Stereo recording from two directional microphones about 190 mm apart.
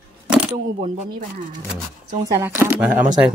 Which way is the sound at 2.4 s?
10° right (ahead or behind).